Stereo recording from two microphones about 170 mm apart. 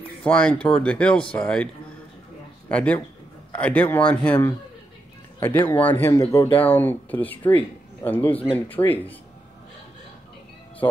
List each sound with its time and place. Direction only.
0.2 s a man's voice: 5° left (ahead or behind)
2.7 s speech: 5° left (ahead or behind)
10.8 s music: 20° left (ahead or behind)